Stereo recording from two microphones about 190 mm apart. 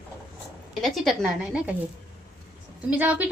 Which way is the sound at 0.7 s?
Centre (ahead or behind).